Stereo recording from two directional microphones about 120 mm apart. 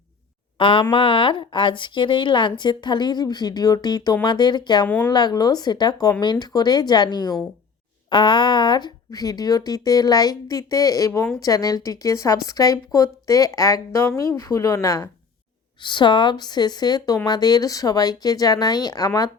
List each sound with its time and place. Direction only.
0.6 s speech: 45° left (ahead or behind); by 15.1 s 25° left (ahead or behind)
15.8 s speech: 40° left (ahead or behind)